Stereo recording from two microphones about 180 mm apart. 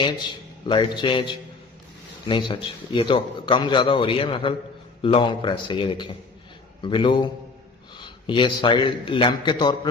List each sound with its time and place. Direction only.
0.0 s a man's voice: 25° left (ahead or behind)